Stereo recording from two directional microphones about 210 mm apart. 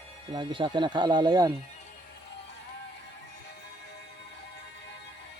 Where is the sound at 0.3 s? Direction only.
25° right (ahead or behind).